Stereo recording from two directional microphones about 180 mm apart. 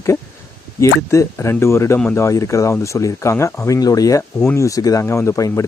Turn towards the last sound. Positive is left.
turn(degrees=15)  # may be behind; listen again after turning